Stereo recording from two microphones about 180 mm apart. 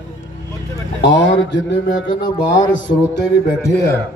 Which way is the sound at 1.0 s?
80° left.